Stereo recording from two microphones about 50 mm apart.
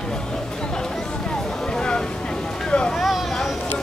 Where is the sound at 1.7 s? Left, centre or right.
Centre.